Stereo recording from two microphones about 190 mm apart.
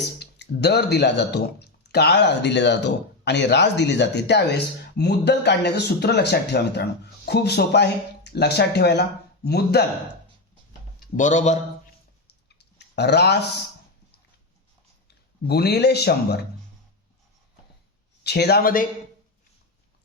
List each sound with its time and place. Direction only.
0.2 s speech: 60° left (ahead or behind)
11.2 s speech: 40° left (ahead or behind)
12.8 s speech: 60° left (ahead or behind)
15.0 s speech: 60° left (ahead or behind)
18.2 s speech: 60° left (ahead or behind)